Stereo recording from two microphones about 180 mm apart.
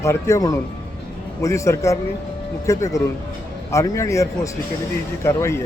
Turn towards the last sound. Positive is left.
turn(degrees=15)  # may be behind; listen again after turning